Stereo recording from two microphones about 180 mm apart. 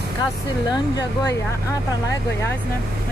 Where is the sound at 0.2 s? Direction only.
20° left (ahead or behind).